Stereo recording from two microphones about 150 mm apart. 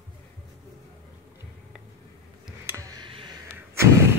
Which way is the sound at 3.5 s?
20° right (ahead or behind).